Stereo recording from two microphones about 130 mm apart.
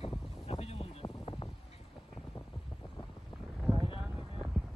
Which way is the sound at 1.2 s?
45° left (ahead or behind).